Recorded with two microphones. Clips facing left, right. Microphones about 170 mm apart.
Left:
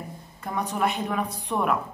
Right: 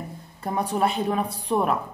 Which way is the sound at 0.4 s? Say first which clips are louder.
Right 3 dB; 30° right (ahead or behind).